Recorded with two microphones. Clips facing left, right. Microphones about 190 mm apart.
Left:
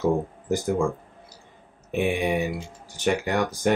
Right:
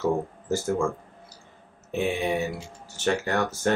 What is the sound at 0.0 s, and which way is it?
Speech, 15° left (ahead or behind).